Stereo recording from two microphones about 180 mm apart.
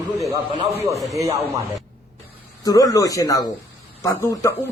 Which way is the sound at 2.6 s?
20° left (ahead or behind).